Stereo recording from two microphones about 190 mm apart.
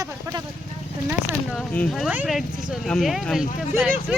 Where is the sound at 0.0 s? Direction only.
15° right (ahead or behind).